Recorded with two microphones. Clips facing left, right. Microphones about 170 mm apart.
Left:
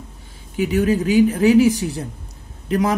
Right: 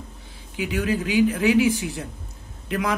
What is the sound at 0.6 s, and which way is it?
A man's voice, 45° left (ahead or behind).